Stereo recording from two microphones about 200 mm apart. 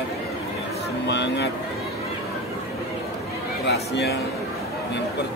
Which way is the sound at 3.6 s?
55° left (ahead or behind).